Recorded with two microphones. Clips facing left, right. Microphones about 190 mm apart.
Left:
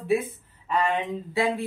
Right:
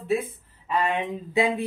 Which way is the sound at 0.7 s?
10° right (ahead or behind).